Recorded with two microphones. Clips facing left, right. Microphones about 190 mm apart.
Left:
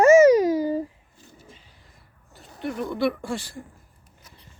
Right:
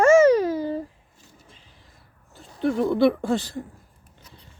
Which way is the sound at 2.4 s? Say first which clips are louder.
Right 7 dB; centre (ahead or behind).